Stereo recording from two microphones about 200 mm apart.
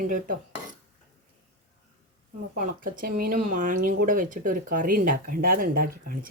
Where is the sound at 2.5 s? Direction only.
45° right (ahead or behind).